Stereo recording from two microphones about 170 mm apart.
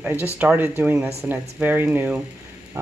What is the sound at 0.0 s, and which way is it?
Speech, 10° right (ahead or behind).